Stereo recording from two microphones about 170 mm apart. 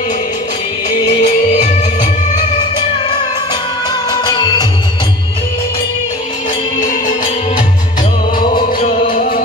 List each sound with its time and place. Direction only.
0.9 s music: 40° left (ahead or behind)
4.1 s music: 25° left (ahead or behind)
6.8 s music: 50° left (ahead or behind)